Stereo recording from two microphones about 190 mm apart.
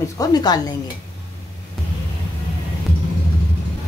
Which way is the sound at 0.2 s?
20° left (ahead or behind).